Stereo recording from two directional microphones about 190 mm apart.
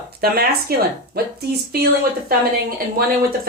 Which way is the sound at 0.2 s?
55° right (ahead or behind).